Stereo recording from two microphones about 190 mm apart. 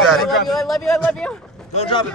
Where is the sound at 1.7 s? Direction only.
35° left (ahead or behind).